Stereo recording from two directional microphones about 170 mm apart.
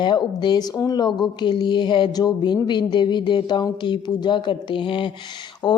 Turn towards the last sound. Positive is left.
turn(degrees=25)  # may be behind; listen again after turning